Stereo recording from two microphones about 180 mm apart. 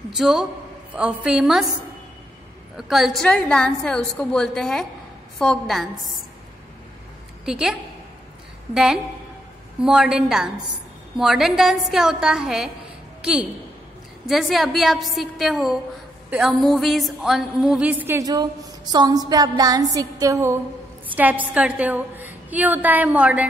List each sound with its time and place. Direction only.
0.1 s a woman's voice: 5° right (ahead or behind)
2.9 s a woman's voice: centre (ahead or behind)
7.4 s a woman's voice: 5° right (ahead or behind)
8.7 s a woman's voice: 5° right (ahead or behind)
16.3 s a sound: centre (ahead or behind)